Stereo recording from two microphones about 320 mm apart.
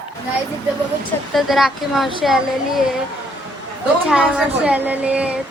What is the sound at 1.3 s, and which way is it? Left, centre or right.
Speech, centre.